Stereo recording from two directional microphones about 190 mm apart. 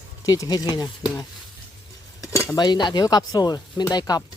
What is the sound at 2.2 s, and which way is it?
Speech, 15° left (ahead or behind).